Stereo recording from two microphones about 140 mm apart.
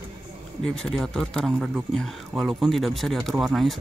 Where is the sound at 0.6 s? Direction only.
5° left (ahead or behind).